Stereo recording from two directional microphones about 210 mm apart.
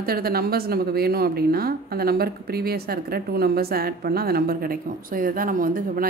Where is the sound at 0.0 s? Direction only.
45° right (ahead or behind).